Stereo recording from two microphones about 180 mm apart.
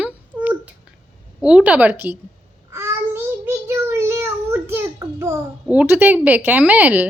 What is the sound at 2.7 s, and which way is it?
Child singing, 15° right (ahead or behind).